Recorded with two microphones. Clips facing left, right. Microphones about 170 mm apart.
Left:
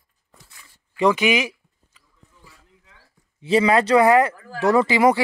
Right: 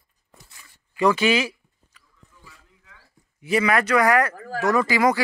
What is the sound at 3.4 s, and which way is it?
Speech, 30° left (ahead or behind).